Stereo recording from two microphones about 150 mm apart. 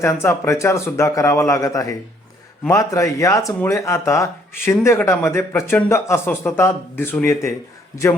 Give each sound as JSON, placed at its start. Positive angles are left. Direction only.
{"t": 0.0, "sound": "a man's voice", "side_deg": 20}